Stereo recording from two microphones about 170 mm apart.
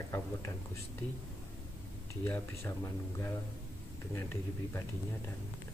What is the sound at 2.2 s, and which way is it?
A man's voice, 15° left (ahead or behind).